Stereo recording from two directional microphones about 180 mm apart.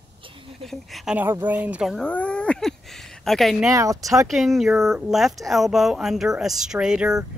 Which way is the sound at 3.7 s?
20° right (ahead or behind).